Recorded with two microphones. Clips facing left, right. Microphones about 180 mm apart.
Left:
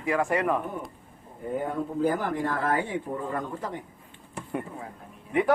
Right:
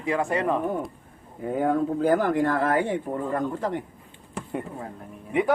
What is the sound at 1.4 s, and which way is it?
Speech, 80° right.